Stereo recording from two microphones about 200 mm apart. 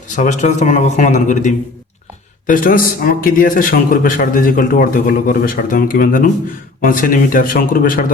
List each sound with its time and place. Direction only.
0.2 s a man's voice: 40° left (ahead or behind)